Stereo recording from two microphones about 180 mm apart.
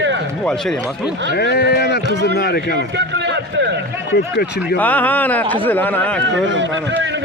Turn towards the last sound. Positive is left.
turn(degrees=-90)